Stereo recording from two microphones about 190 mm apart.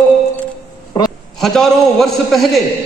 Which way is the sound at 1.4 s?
Centre (ahead or behind).